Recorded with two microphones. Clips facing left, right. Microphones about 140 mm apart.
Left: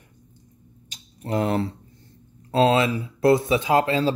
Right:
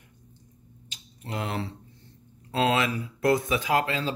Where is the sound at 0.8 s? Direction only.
40° left (ahead or behind).